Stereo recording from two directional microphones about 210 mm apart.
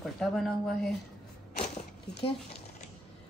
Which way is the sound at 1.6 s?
35° left (ahead or behind).